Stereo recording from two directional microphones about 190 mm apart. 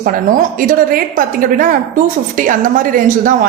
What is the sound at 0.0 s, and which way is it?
A woman's voice, 45° right (ahead or behind).